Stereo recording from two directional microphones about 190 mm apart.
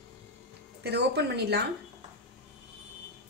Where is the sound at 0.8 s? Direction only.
60° right (ahead or behind).